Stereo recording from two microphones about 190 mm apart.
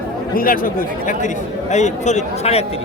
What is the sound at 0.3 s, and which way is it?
Speech, 50° left (ahead or behind).